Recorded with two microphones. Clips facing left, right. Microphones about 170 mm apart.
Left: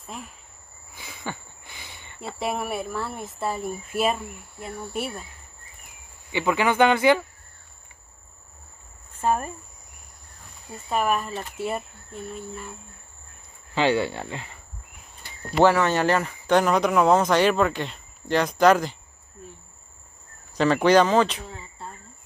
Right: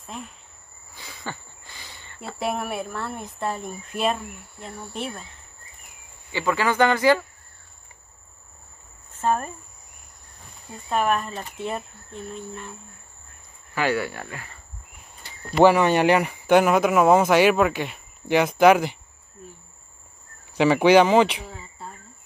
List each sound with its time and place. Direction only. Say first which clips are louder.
0.0 s speech: right 1 dB; centre (ahead or behind)
0.9 s a sound: left 1 dB; 15° left (ahead or behind)
2.2 s speech: right 1 dB; centre (ahead or behind)
6.3 s a man's voice: left 1 dB; 20° left (ahead or behind)
9.2 s a man's voice: even; 10° left (ahead or behind)
10.9 s speech: right 1 dB; 5° left (ahead or behind)
13.7 s speech: left 2 dB; 25° left (ahead or behind)
15.6 s speech: right 3 dB; 15° right (ahead or behind)
20.5 s a man's voice: right 2 dB; 10° right (ahead or behind)